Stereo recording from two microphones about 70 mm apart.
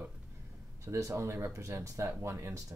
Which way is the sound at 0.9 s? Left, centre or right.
Right.